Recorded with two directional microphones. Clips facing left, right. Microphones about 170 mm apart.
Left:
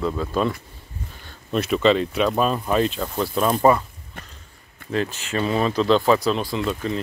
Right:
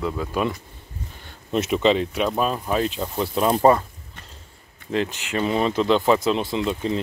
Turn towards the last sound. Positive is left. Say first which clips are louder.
# right 1 dB
turn(degrees=-20)  # may be behind; listen again after turning